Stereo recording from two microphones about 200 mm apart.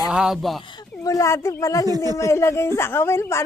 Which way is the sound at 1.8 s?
20° right (ahead or behind).